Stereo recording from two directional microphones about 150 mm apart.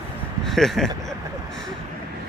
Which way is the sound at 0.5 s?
Centre (ahead or behind).